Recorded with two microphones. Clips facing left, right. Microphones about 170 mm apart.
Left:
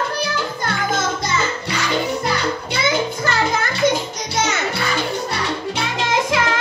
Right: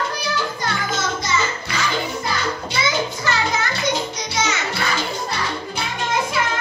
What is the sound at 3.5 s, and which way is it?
Music, 50° left (ahead or behind).